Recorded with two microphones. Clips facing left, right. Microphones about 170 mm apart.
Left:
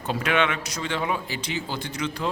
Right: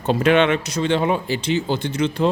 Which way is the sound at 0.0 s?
25° right (ahead or behind).